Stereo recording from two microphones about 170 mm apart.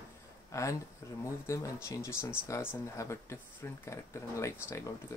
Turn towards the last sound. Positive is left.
turn(degrees=15)  # may be behind; listen again after turning